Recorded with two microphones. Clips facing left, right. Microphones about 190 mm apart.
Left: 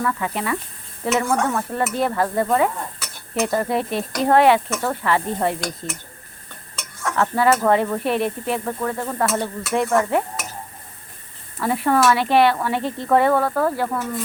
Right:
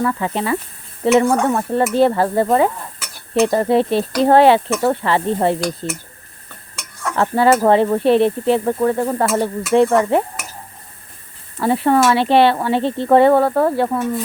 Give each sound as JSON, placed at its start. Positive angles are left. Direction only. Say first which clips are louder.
{"t": 0.0, "sound": "speech", "louder": "right 4 dB", "side_deg": -30}
{"t": 7.2, "sound": "speech", "louder": "right 4 dB", "side_deg": -30}
{"t": 11.6, "sound": "speech", "louder": "right 4 dB", "side_deg": -30}